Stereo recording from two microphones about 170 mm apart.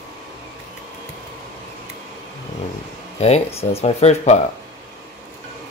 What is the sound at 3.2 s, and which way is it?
Speech, 35° left (ahead or behind).